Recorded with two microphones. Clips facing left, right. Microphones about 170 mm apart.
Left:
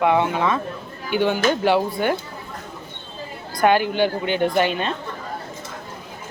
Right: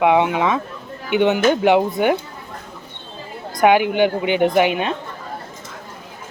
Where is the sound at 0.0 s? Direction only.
15° right (ahead or behind).